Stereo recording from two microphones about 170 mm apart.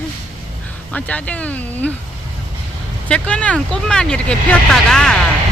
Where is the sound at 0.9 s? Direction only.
10° left (ahead or behind).